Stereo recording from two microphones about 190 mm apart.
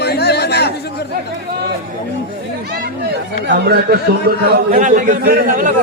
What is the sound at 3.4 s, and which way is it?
Speech, 60° right (ahead or behind).